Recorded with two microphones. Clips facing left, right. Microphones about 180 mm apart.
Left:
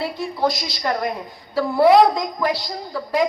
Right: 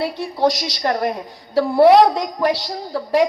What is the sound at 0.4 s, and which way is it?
Speech, 70° right (ahead or behind).